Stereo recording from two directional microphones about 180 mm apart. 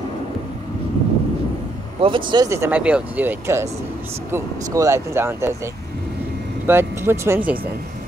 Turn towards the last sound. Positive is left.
turn(degrees=-10)  # may be behind; listen again after turning